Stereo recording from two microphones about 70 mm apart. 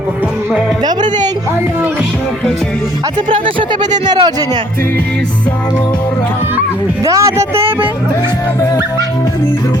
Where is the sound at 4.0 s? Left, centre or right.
Right.